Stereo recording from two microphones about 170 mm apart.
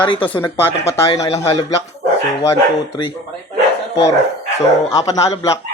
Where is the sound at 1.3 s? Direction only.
35° left (ahead or behind).